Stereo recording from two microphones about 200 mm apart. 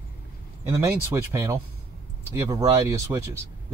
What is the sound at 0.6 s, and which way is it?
Speech, 15° right (ahead or behind).